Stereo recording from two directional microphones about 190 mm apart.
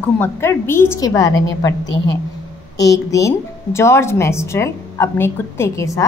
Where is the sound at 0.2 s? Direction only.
15° left (ahead or behind).